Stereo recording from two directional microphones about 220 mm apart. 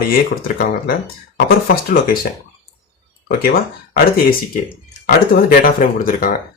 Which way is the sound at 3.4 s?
40° left (ahead or behind).